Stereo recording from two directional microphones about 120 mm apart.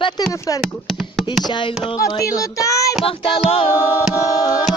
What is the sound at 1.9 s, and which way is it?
Speech, 30° left (ahead or behind).